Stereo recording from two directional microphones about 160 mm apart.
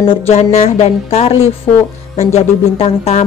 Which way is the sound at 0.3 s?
45° left (ahead or behind).